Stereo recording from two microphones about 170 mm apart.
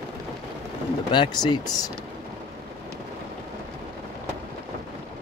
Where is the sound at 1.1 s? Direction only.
25° left (ahead or behind).